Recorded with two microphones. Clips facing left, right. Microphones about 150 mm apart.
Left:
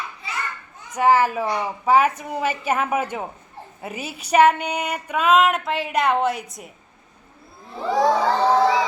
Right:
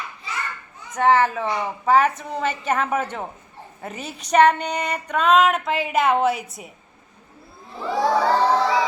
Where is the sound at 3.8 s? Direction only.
5° left (ahead or behind).